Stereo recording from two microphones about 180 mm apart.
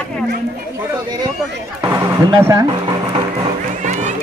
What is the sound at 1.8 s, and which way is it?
Speech, 15° right (ahead or behind).